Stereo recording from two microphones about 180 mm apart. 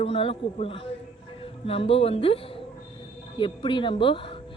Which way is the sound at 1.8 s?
30° left (ahead or behind).